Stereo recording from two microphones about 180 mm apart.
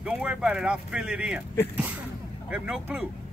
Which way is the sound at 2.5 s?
5° right (ahead or behind).